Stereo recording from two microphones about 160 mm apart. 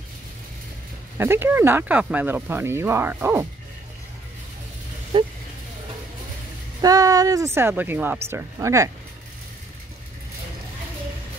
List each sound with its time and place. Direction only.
1.1 s speech: 15° right (ahead or behind)
5.1 s speech: 30° right (ahead or behind)
6.8 s speech: 20° right (ahead or behind)